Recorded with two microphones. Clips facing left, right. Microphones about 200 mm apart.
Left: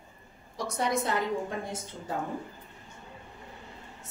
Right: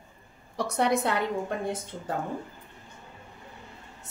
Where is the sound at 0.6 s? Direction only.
65° right (ahead or behind).